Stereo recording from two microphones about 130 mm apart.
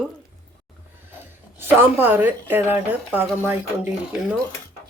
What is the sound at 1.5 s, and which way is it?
A woman's voice, 15° right (ahead or behind).